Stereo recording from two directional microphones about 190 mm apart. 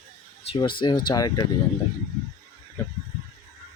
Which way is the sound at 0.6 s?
25° left (ahead or behind).